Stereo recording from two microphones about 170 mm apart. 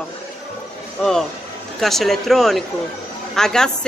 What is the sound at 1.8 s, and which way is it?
A woman's voice, centre (ahead or behind).